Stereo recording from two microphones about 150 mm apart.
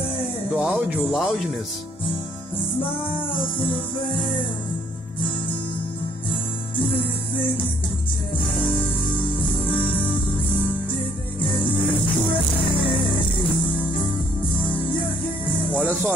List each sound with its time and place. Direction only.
0.2 s speech: 10° right (ahead or behind)
3.5 s music: 35° left (ahead or behind)
9.4 s music: 35° left (ahead or behind)
15.8 s music: 15° right (ahead or behind)